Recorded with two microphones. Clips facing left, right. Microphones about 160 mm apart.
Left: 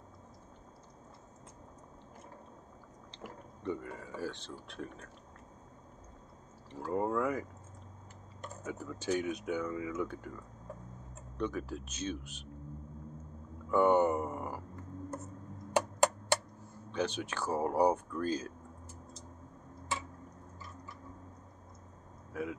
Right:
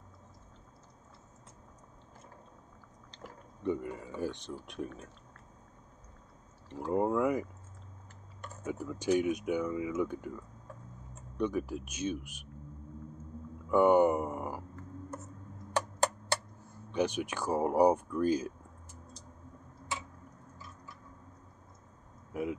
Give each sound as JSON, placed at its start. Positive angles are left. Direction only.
{"t": 3.6, "sound": "speech", "side_deg": -15}
{"t": 6.8, "sound": "speech", "side_deg": -20}
{"t": 8.6, "sound": "speech", "side_deg": -15}
{"t": 11.3, "sound": "speech", "side_deg": -15}
{"t": 13.7, "sound": "a sound", "side_deg": -10}
{"t": 16.9, "sound": "speech", "side_deg": -15}
{"t": 22.3, "sound": "vehicle", "side_deg": -20}